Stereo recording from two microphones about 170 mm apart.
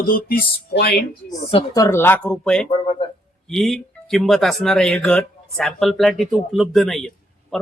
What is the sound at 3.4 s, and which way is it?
Speech, centre (ahead or behind).